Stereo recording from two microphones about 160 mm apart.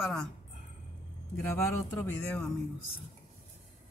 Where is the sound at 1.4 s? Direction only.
15° left (ahead or behind).